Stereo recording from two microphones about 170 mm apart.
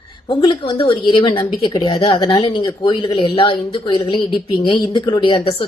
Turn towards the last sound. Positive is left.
turn(degrees=30)  # may be behind; listen again after turning